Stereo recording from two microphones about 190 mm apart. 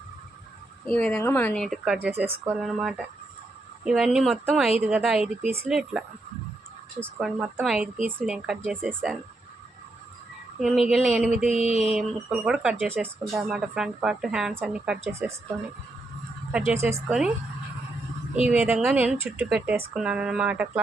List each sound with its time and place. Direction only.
0.9 s a woman's voice: 5° left (ahead or behind)
10.6 s speech: 5° right (ahead or behind)
11.4 s mantra: 30° left (ahead or behind)
11.9 s speech: 5° right (ahead or behind)
16.5 s speech: 5° right (ahead or behind)
18.3 s a woman's voice: 5° right (ahead or behind)